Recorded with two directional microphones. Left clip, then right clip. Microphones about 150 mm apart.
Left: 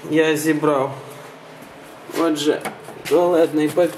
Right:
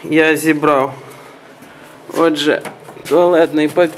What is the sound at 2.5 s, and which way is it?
Speech, 30° right (ahead or behind).